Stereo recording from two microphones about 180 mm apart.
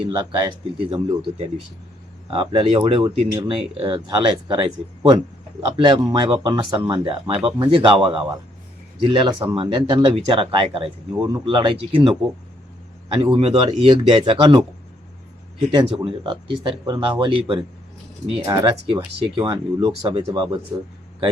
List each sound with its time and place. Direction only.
0.0 s speech: 25° right (ahead or behind)
15.7 s speech: 25° right (ahead or behind)